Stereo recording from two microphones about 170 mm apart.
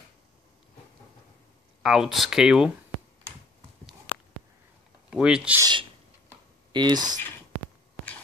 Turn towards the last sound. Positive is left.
turn(degrees=-25)  # may be behind; listen again after turning